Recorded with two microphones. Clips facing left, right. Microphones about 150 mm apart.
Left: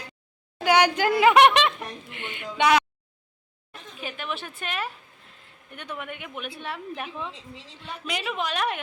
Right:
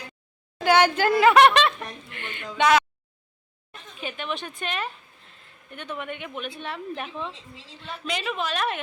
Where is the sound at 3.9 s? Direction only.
5° left (ahead or behind).